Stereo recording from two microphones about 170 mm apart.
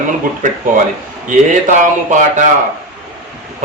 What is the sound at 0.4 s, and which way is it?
A man's voice, 50° right (ahead or behind).